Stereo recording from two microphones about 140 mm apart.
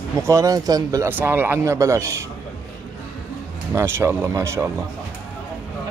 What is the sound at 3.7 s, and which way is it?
Speech, 20° right (ahead or behind).